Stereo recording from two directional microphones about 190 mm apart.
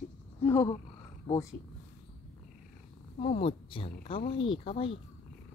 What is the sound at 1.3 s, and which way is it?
Speech, 25° left (ahead or behind).